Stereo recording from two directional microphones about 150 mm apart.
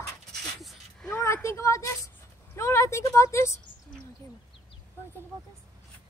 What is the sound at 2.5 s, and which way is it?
A woman's voice, 20° left (ahead or behind).